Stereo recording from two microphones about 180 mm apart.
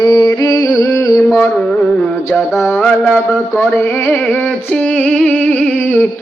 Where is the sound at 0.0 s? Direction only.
25° left (ahead or behind).